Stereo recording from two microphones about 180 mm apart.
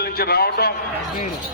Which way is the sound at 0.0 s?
60° left (ahead or behind).